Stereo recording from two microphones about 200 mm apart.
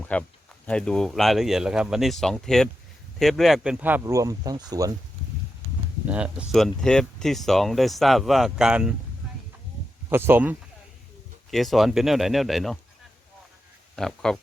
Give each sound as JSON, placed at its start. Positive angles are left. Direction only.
{"t": 0.1, "sound": "speech", "side_deg": 5}
{"t": 6.1, "sound": "speech", "side_deg": -5}
{"t": 10.1, "sound": "speech", "side_deg": -10}
{"t": 13.9, "sound": "speech", "side_deg": 5}